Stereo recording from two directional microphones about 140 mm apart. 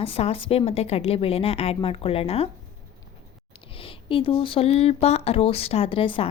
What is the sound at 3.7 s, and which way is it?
Speech, 40° left (ahead or behind).